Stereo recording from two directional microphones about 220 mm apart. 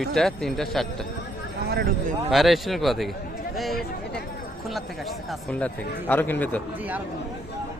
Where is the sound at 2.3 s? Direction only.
Centre (ahead or behind).